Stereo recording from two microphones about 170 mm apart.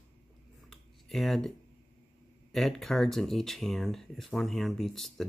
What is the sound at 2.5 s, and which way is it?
Speech, centre (ahead or behind).